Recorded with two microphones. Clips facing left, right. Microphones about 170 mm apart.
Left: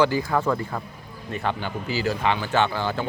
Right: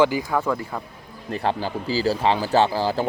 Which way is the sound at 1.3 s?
35° right (ahead or behind).